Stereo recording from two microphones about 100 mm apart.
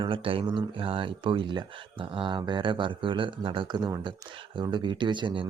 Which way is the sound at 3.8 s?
40° right (ahead or behind).